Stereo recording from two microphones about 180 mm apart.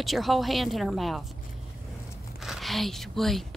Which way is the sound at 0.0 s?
Centre (ahead or behind).